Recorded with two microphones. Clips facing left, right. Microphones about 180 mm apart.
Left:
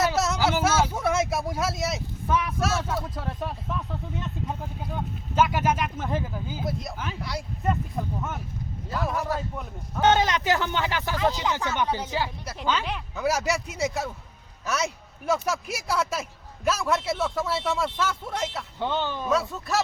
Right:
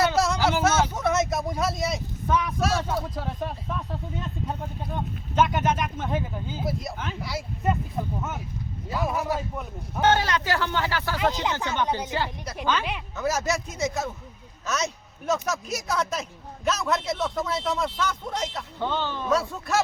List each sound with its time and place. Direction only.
0.0 s speech: centre (ahead or behind)
5.3 s a man's voice: 5° left (ahead or behind); by 9.6 s 10° right (ahead or behind)
10.1 s speech: 20° left (ahead or behind)
11.2 s a man's voice: 15° right (ahead or behind)
12.1 s a man's voice: 10° left (ahead or behind)
15.3 s a man's voice: 10° left (ahead or behind)
19.3 s speech: centre (ahead or behind)